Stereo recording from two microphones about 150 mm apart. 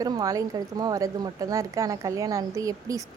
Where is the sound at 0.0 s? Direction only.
25° right (ahead or behind).